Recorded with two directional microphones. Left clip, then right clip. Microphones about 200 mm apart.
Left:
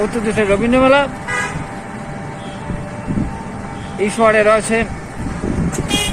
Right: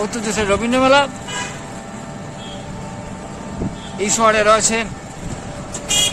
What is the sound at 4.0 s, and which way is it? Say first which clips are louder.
Speech: left 2 dB; 15° right (ahead or behind).